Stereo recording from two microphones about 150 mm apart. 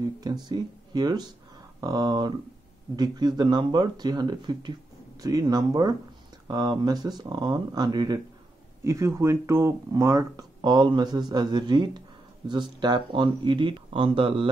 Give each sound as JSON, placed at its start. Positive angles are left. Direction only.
{"t": 0.0, "sound": "speech", "side_deg": -25}